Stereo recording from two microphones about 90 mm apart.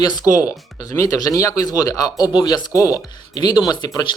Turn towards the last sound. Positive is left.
turn(degrees=55)  # may be behind; listen again after turning